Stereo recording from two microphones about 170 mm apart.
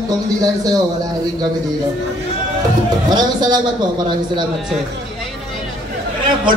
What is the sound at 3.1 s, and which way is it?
A man's voice, 25° right (ahead or behind).